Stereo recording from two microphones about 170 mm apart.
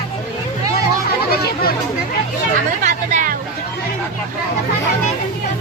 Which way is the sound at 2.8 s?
45° right (ahead or behind).